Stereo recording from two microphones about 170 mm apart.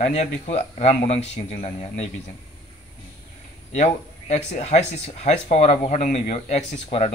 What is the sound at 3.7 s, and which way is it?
Speech, 40° left (ahead or behind).